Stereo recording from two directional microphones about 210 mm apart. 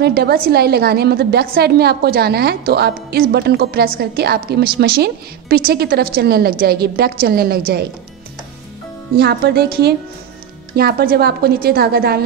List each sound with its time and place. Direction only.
0.0 s a woman's voice: 50° right (ahead or behind)
9.1 s a woman's voice: 50° right (ahead or behind)